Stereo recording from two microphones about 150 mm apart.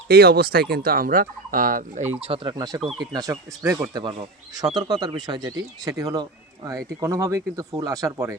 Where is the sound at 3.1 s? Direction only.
25° right (ahead or behind).